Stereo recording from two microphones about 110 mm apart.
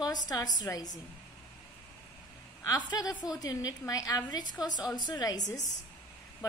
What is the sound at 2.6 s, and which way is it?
A woman's voice, 35° left (ahead or behind).